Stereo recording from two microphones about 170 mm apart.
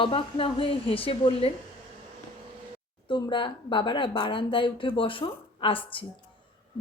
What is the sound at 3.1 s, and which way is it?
A woman's voice, 25° left (ahead or behind).